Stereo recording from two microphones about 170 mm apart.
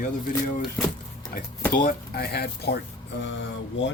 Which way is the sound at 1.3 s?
60° left (ahead or behind).